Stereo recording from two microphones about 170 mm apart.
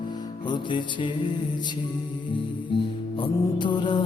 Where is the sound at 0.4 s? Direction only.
25° left (ahead or behind).